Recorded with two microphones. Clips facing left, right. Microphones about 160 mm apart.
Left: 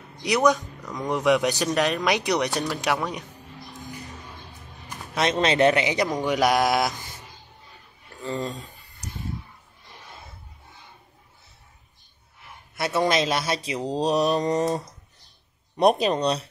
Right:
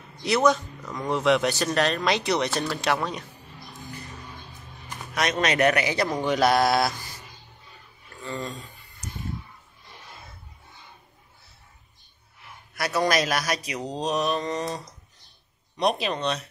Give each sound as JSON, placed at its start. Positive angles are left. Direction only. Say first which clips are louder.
{"t": 0.2, "sound": "a man's voice", "louder": "even", "side_deg": 15}
{"t": 5.1, "sound": "a man's voice", "louder": "left 2 dB", "side_deg": 25}
{"t": 8.2, "sound": "mantra", "louder": "left 4 dB", "side_deg": 35}
{"t": 12.7, "sound": "a man's voice", "louder": "left 2 dB", "side_deg": 25}
{"t": 13.1, "sound": "mantra", "louder": "left 1 dB", "side_deg": 25}
{"t": 15.8, "sound": "mantra", "louder": "left 5 dB", "side_deg": 45}